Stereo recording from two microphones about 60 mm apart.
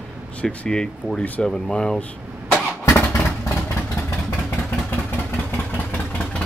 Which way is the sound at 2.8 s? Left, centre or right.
Left.